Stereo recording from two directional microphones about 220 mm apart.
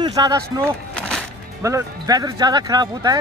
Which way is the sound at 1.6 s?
15° right (ahead or behind).